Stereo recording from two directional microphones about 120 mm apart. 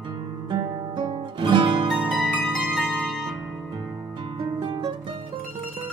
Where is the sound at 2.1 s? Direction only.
Centre (ahead or behind).